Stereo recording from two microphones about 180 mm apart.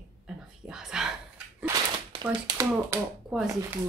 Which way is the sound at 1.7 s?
20° right (ahead or behind).